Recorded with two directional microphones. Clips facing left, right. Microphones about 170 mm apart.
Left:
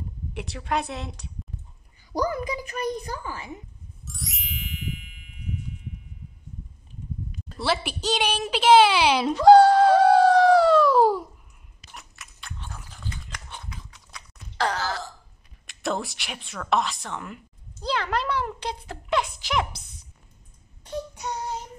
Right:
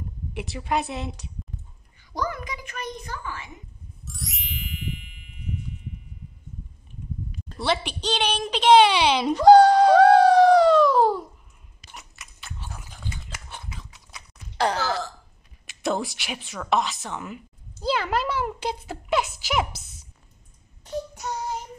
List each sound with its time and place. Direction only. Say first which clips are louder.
0.3 s a woman's voice: right 1 dB; centre (ahead or behind)
2.1 s a woman's voice: left 4 dB; 35° left (ahead or behind)
4.0 s ding: right 1 dB; centre (ahead or behind)
7.5 s a woman's voice: right 1 dB; 5° left (ahead or behind)
9.2 s screaming: right 1 dB; centre (ahead or behind)
11.9 s a sound: even; centre (ahead or behind)
13.3 s dog: even; 5° right (ahead or behind)
13.8 s horse: even; 5° right (ahead or behind)
15.6 s a woman's voice: right 2 dB; centre (ahead or behind)